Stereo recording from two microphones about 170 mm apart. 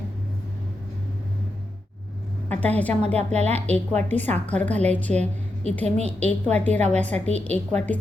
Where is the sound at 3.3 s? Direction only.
40° right (ahead or behind).